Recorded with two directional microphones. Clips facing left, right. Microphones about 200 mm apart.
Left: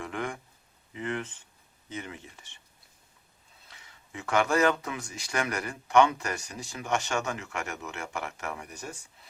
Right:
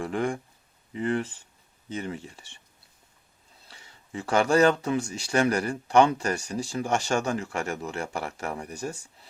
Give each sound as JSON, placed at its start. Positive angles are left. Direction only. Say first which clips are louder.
{"t": 0.0, "sound": "a sound", "louder": "right 7 dB", "side_deg": -30}
{"t": 0.9, "sound": "speech", "louder": "right 6 dB", "side_deg": -35}
{"t": 3.7, "sound": "speech", "louder": "right 6 dB", "side_deg": -30}